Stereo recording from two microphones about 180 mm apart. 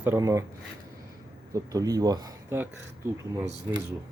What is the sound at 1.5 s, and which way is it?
Speech, 20° right (ahead or behind).